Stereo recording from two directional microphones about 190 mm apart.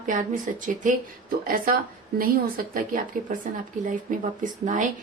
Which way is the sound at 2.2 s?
50° right (ahead or behind).